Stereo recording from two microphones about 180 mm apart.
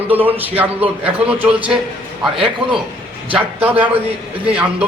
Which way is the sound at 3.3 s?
10° right (ahead or behind).